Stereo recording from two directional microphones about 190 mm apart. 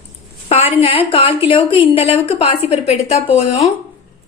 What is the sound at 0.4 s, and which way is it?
A woman's voice, 35° left (ahead or behind).